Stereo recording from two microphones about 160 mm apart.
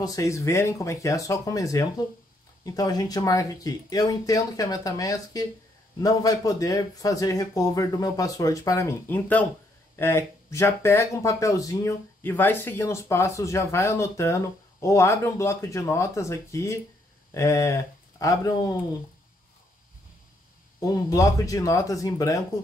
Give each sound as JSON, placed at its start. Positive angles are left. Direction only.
{"t": 0.0, "sound": "speech", "side_deg": 20}
{"t": 20.8, "sound": "speech", "side_deg": 20}